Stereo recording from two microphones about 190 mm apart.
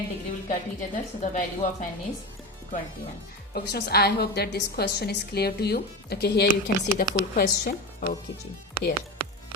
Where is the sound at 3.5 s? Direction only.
55° left (ahead or behind).